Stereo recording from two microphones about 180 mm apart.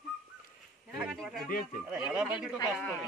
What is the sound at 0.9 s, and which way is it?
Speech, centre (ahead or behind).